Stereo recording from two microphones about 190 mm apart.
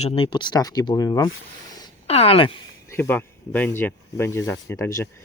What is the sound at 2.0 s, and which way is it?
Speech, 30° left (ahead or behind).